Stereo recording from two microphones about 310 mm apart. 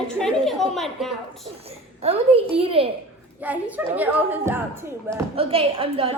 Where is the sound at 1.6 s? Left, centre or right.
Centre.